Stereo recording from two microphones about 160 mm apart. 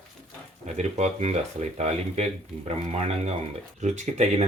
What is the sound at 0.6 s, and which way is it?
Speech, 45° right (ahead or behind).